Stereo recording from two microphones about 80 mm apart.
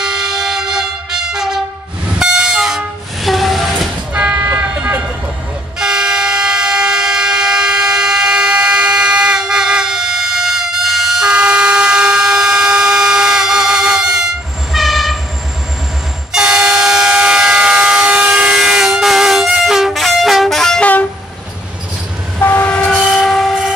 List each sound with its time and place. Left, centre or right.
0.0 s train: centre
4.1 s vehicle: centre
5.8 s train: centre
16.3 s train: centre
20.8 s train: centre
22.4 s train: left
22.8 s train: centre